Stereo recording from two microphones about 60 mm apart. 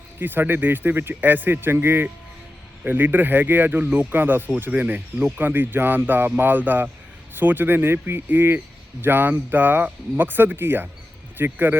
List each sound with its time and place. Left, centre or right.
0.2 s speech: right